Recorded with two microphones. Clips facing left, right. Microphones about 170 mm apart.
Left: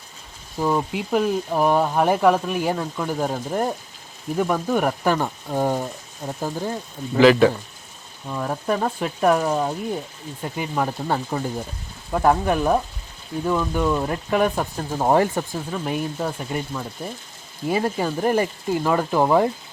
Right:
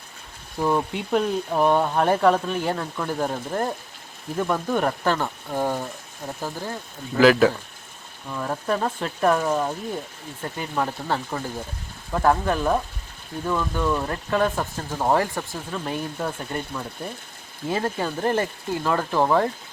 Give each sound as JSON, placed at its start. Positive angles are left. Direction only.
{"t": 0.5, "sound": "speech", "side_deg": 0}
{"t": 7.2, "sound": "speech", "side_deg": 0}
{"t": 8.3, "sound": "speech", "side_deg": 10}